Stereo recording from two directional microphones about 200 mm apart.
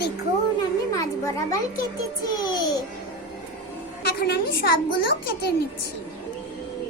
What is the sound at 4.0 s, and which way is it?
Speech, 50° left (ahead or behind).